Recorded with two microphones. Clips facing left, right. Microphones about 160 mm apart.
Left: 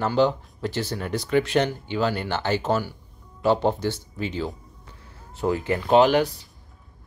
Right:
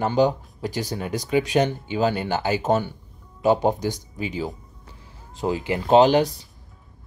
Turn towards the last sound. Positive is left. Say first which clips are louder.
# right 2 dB
turn(degrees=-30)  # may be behind; listen again after turning